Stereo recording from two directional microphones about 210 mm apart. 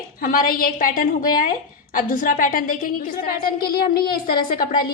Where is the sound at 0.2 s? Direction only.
40° left (ahead or behind).